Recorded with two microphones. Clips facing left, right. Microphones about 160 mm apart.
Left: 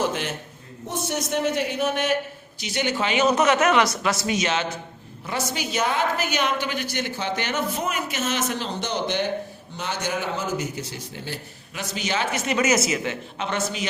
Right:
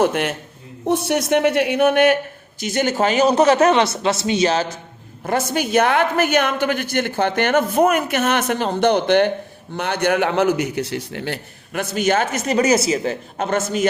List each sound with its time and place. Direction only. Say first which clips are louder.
0.0 s a woman's voice: right 7 dB; 60° right (ahead or behind)
2.6 s a man's voice: right 6 dB; 45° right (ahead or behind)
5.2 s a woman's voice: right 8 dB; 50° right (ahead or behind)